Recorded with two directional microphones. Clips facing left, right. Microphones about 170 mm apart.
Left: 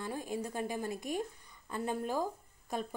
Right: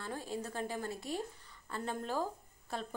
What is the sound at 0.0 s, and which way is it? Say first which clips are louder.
A woman's voice: left 3 dB; 15° left (ahead or behind).